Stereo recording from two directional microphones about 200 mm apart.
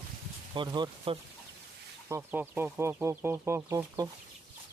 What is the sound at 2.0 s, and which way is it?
Speech, 10° right (ahead or behind).